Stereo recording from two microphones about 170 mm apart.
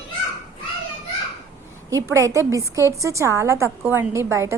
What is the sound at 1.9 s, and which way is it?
A woman's voice, 20° right (ahead or behind).